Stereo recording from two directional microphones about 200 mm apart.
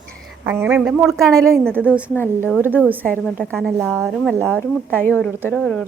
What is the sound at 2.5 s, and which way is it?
Speech, 10° right (ahead or behind).